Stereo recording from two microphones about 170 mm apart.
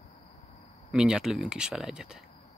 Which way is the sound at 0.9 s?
5° right (ahead or behind).